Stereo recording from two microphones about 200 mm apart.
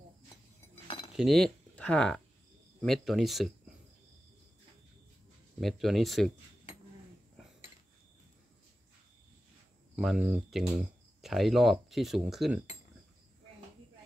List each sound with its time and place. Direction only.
0.8 s keys jangling: 25° left (ahead or behind)
1.1 s speech: centre (ahead or behind)
5.6 s speech: centre (ahead or behind)
9.9 s speech: 5° right (ahead or behind)